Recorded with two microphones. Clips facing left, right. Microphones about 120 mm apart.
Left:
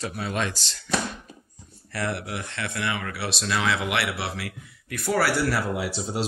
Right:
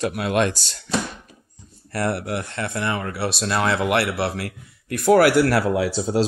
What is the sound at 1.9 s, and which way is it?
Speech, 45° right (ahead or behind).